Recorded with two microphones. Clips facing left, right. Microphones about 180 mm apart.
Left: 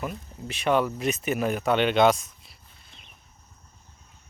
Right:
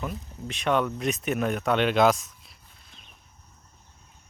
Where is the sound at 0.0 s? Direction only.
5° left (ahead or behind).